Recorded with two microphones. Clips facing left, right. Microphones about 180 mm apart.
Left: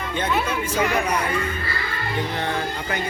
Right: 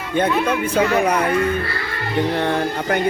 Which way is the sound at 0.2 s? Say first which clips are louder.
Right 6 dB; 60° right (ahead or behind).